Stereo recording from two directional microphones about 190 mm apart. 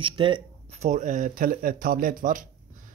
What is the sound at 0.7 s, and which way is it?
Speech, 40° right (ahead or behind).